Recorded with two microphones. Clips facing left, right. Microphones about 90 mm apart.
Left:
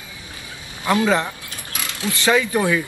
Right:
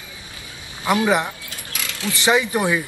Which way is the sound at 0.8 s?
15° right (ahead or behind).